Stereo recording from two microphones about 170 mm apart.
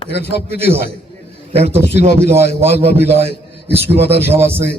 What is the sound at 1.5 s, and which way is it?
A man's voice, 35° right (ahead or behind).